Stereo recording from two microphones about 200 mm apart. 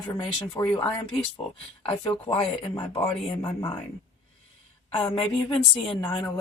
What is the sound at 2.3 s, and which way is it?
A woman's voice, 25° left (ahead or behind).